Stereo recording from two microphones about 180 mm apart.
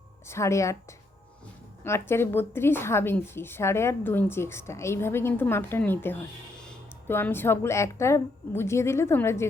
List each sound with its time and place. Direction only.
0.3 s a woman's voice: 15° left (ahead or behind)
1.8 s a woman's voice: 15° left (ahead or behind)